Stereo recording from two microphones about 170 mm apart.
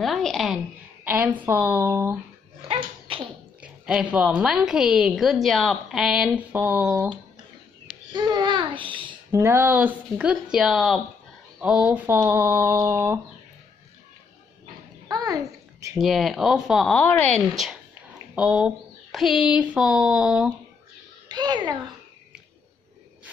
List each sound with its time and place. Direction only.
0.0 s a woman's voice: centre (ahead or behind)
2.7 s dog: 35° right (ahead or behind)
3.6 s a woman's voice: 5° right (ahead or behind)
8.1 s babbling: 25° right (ahead or behind)
9.3 s speech: 15° right (ahead or behind)
15.0 s babbling: 20° right (ahead or behind)
16.0 s a woman's voice: centre (ahead or behind)
21.3 s a child's voice: 25° right (ahead or behind)